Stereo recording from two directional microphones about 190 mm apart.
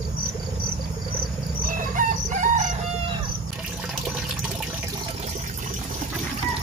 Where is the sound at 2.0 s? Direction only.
40° right (ahead or behind).